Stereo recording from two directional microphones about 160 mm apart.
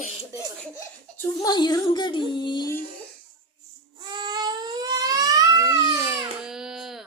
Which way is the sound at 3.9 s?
25° right (ahead or behind).